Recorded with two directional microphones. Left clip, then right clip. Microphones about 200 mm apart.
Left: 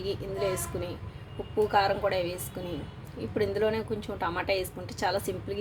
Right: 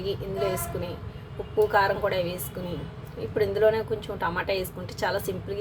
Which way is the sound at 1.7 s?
10° left (ahead or behind).